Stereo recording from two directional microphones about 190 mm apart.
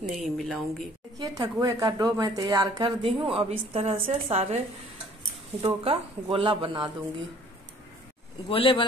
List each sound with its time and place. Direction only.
0.2 s speech: centre (ahead or behind)
1.1 s speech: 20° right (ahead or behind)
5.7 s speech: 30° right (ahead or behind)
8.5 s speech: 25° left (ahead or behind)